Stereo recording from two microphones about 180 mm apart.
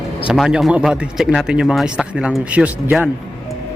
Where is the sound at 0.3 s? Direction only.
5° right (ahead or behind).